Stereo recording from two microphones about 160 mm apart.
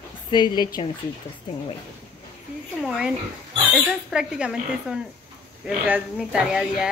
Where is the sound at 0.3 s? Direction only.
25° left (ahead or behind).